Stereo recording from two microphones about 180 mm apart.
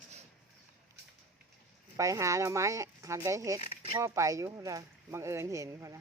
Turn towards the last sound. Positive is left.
turn(degrees=-15)  # may be behind; listen again after turning